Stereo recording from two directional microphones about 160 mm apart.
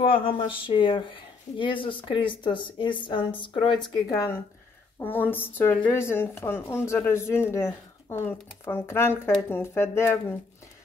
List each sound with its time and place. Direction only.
0.0 s speech: 35° left (ahead or behind)
4.1 s a woman's voice: 15° left (ahead or behind)